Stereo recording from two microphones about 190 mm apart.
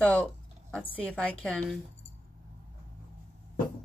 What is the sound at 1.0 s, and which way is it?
Speech, 5° left (ahead or behind).